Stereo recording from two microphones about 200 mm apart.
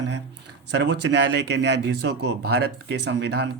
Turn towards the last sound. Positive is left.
turn(degrees=-55)  # may be behind; listen again after turning